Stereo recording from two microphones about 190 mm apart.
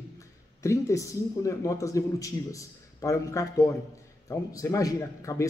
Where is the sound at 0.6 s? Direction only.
15° left (ahead or behind).